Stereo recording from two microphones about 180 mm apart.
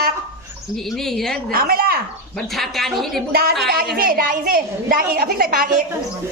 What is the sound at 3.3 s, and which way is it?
A woman's voice, 60° right (ahead or behind).